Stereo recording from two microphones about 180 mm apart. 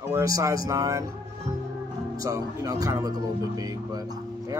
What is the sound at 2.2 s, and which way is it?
Speech, 20° right (ahead or behind).